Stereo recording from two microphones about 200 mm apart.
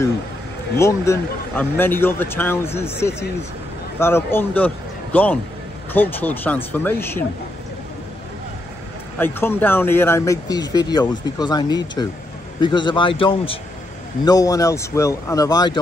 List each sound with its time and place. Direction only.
0.7 s a man's voice: 15° left (ahead or behind)
9.2 s speech: 10° left (ahead or behind)